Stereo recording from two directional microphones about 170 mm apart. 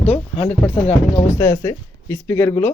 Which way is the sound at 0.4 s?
10° left (ahead or behind).